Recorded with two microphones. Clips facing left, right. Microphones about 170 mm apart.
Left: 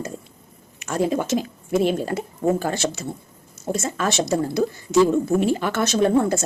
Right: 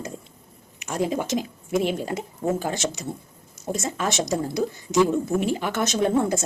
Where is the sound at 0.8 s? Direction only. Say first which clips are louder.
Left 3 dB; 15° right (ahead or behind).